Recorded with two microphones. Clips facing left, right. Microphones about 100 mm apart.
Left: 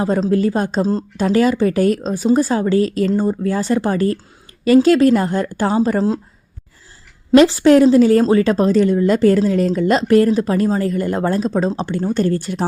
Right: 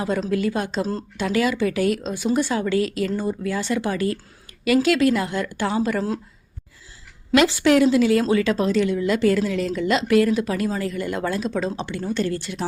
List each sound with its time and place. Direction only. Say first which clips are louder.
0.0 s a woman's voice: left 6 dB; 35° left (ahead or behind)
7.3 s a woman's voice: left 7 dB; 35° left (ahead or behind)